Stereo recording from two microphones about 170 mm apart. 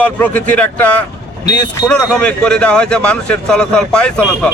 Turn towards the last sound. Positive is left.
turn(degrees=5)  # may be behind; listen again after turning